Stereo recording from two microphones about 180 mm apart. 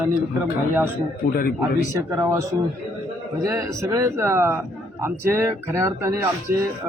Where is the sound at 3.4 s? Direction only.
20° right (ahead or behind).